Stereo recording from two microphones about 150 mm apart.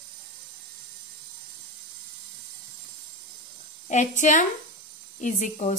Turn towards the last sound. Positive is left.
turn(degrees=55)  # may be behind; listen again after turning